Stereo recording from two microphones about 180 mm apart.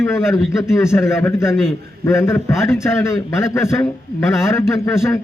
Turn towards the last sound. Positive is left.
turn(degrees=15)  # may be behind; listen again after turning